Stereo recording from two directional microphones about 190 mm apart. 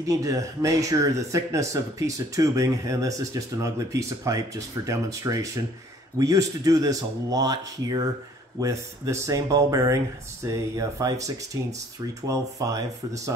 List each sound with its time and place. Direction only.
0.0 s speech: 20° right (ahead or behind)